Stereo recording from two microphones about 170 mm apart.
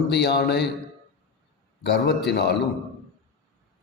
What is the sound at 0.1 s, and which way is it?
Speech, 75° left (ahead or behind).